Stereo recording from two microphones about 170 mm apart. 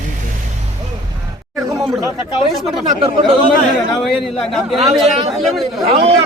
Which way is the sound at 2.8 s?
35° right (ahead or behind).